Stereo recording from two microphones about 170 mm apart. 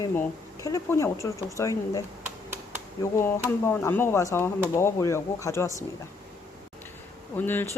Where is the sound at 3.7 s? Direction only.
15° left (ahead or behind).